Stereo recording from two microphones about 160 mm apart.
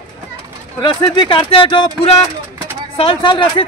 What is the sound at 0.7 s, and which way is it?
Speech, 25° left (ahead or behind).